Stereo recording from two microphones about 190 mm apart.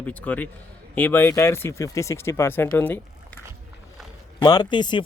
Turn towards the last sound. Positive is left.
turn(degrees=25)  # may be behind; listen again after turning